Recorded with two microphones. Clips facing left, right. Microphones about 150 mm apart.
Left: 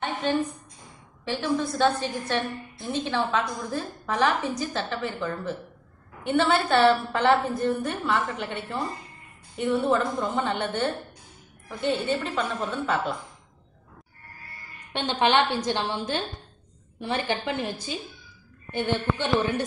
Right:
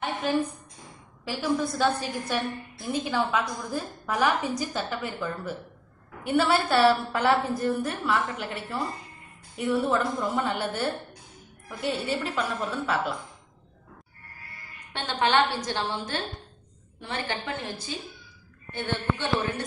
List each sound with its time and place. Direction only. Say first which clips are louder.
0.0 s a sound: left 1 dB; 5° right (ahead or behind)
1.2 s a woman's voice: left 1 dB; 10° right (ahead or behind)
14.9 s a woman's voice: left 2 dB; 15° left (ahead or behind)